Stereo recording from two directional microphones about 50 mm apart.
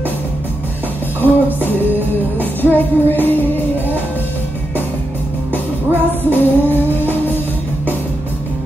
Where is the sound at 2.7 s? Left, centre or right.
Left.